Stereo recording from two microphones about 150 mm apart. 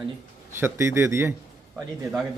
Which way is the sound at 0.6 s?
15° right (ahead or behind).